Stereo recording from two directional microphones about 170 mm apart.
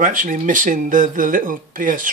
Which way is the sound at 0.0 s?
50° right (ahead or behind).